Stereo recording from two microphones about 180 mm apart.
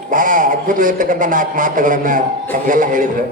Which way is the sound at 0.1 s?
45° right (ahead or behind).